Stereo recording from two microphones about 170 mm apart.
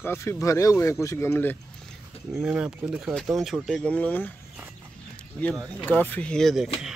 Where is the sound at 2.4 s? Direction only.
5° right (ahead or behind); by 4.3 s 10° left (ahead or behind).